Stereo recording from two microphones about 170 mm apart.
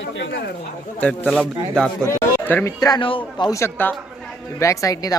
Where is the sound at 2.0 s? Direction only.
15° left (ahead or behind).